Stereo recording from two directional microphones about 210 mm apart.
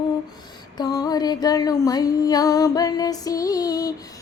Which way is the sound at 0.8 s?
15° left (ahead or behind).